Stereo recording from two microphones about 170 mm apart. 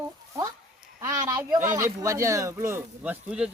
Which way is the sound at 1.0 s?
20° right (ahead or behind).